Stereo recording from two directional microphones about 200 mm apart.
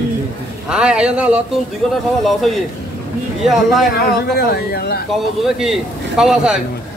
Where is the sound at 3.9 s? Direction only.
50° left (ahead or behind).